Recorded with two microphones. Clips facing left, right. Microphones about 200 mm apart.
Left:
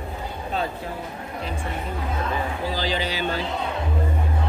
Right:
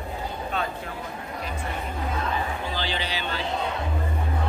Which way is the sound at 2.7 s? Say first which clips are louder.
Left 4 dB; 40° left (ahead or behind).